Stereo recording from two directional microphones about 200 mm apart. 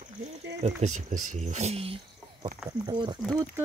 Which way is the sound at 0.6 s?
35° right (ahead or behind).